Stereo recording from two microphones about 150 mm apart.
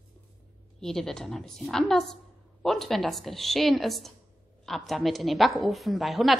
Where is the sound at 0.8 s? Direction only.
5° left (ahead or behind).